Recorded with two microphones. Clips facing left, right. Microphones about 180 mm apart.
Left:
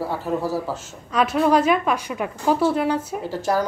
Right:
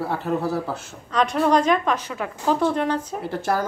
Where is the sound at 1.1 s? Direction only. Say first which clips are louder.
Left 1 dB; 5° left (ahead or behind).